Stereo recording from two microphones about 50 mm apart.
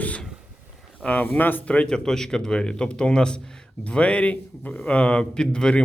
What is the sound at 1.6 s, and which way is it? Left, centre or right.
Speech, left.